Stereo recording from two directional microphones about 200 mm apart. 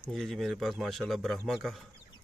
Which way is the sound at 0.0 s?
Centre (ahead or behind).